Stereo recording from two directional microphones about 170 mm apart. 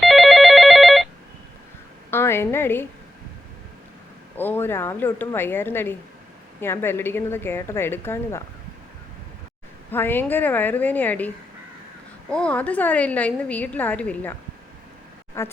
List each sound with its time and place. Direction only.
0.0 s telephone bell ringing: centre (ahead or behind)
2.0 s a sound: 15° left (ahead or behind)
4.4 s a woman's voice: 10° left (ahead or behind)
9.9 s a woman's voice: 10° left (ahead or behind)
12.3 s a woman's voice: 5° left (ahead or behind)
15.4 s a woman's voice: 15° left (ahead or behind)